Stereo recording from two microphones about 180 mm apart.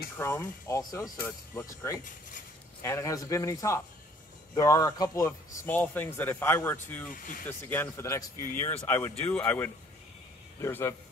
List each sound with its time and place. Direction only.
0.2 s a man's voice: 15° left (ahead or behind)